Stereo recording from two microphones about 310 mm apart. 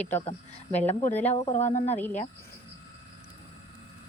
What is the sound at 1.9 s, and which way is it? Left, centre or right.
Speech, centre.